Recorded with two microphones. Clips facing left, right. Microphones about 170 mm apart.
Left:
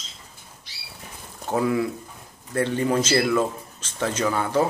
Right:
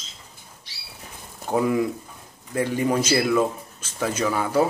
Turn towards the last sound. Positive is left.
turn(degrees=-10)  # may be behind; listen again after turning